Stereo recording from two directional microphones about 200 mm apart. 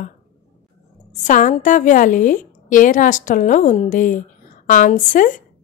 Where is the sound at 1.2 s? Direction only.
40° left (ahead or behind).